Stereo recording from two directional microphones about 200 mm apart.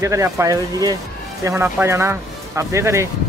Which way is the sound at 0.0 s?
15° right (ahead or behind).